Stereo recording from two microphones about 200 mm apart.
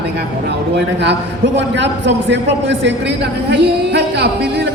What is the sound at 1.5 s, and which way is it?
Speech, 60° right (ahead or behind).